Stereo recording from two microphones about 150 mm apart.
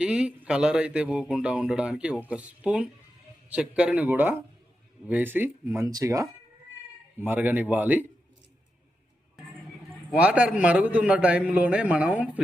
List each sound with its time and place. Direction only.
0.0 s speech: 5° right (ahead or behind)
10.1 s speech: 10° right (ahead or behind)